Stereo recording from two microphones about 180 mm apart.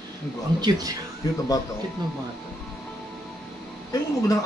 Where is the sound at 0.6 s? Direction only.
20° right (ahead or behind).